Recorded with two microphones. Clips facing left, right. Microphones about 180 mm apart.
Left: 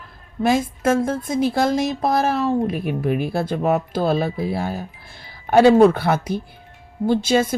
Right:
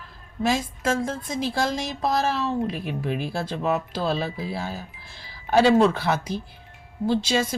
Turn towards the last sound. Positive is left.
turn(degrees=50)  # may be behind; listen again after turning